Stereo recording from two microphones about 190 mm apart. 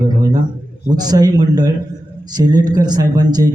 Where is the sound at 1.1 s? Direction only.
20° right (ahead or behind).